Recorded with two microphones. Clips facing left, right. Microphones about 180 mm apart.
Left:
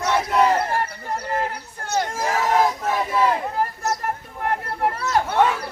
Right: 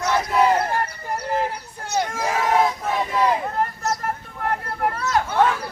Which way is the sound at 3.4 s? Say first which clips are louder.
Even; 5° left (ahead or behind).